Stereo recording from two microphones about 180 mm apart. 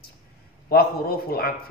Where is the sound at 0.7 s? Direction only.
60° left (ahead or behind).